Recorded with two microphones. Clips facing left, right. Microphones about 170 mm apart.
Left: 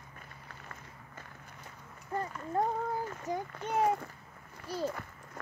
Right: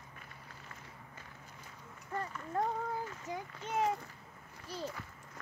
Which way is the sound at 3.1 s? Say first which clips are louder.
Left 6 dB; 45° left (ahead or behind).